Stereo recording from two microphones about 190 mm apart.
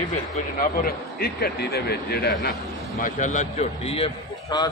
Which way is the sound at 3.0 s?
40° left (ahead or behind).